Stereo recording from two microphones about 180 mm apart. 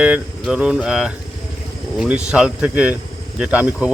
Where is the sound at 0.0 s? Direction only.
5° right (ahead or behind).